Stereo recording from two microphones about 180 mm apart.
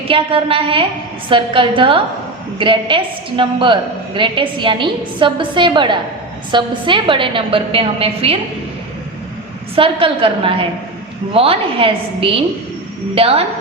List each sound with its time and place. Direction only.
0.1 s a woman's voice: 30° right (ahead or behind)
9.7 s a woman's voice: 30° right (ahead or behind)